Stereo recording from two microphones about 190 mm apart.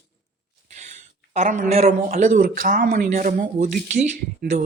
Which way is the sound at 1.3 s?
40° right (ahead or behind).